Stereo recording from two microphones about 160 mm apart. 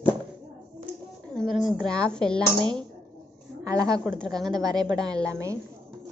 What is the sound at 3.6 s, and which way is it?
Speech, 20° right (ahead or behind).